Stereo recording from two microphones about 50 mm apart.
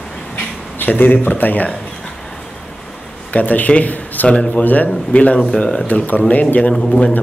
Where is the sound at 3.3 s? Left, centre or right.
Left.